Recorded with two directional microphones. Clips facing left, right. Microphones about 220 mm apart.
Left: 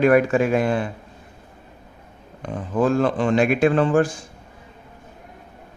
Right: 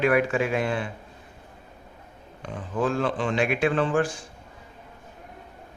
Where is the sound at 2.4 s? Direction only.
45° left (ahead or behind).